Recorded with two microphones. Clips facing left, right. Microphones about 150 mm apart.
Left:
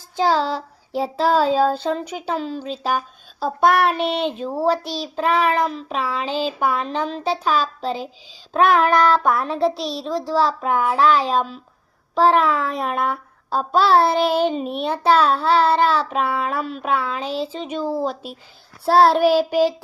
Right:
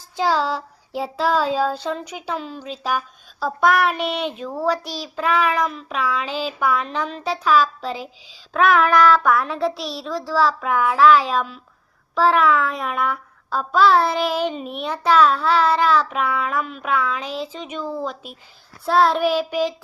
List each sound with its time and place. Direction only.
0.2 s a child's voice: 30° left (ahead or behind)